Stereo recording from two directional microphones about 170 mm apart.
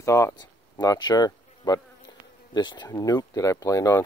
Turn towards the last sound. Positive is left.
turn(degrees=20)  # may be behind; listen again after turning